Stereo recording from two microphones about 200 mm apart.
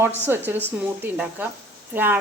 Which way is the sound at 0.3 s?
10° right (ahead or behind).